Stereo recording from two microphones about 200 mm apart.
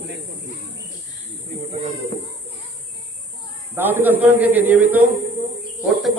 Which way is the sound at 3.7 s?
10° right (ahead or behind).